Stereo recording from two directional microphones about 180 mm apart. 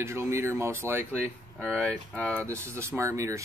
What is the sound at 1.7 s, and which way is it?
Speech, 5° left (ahead or behind).